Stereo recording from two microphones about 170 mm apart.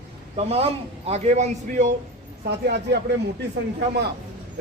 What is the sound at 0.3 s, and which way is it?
A man's voice, 35° right (ahead or behind).